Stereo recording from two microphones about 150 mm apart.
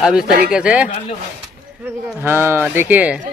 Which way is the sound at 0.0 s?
5° right (ahead or behind).